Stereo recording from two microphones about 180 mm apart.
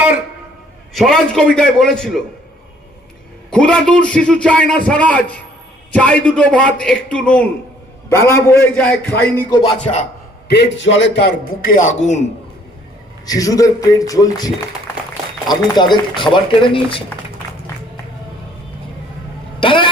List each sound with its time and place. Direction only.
0.9 s a man's voice: centre (ahead or behind)
3.5 s a man's voice: 5° left (ahead or behind)
9.5 s speech: 25° left (ahead or behind)
9.8 s a man's voice: 40° left (ahead or behind)
10.5 s a man's voice: 75° left (ahead or behind)
11.4 s a man's voice: 50° left (ahead or behind)
13.2 s speech: 20° left (ahead or behind)
19.5 s vehicle: 25° left (ahead or behind)